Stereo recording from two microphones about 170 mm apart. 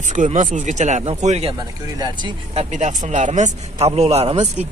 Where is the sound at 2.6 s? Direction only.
45° right (ahead or behind).